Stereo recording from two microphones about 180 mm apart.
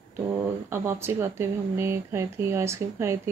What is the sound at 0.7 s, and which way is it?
Speech, 15° right (ahead or behind).